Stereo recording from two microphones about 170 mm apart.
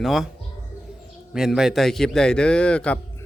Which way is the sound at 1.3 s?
5° right (ahead or behind).